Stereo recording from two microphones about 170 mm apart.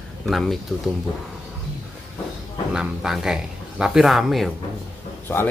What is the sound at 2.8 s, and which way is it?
Speech, 5° right (ahead or behind).